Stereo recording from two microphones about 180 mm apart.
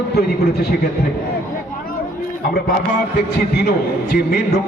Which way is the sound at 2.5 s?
65° left (ahead or behind).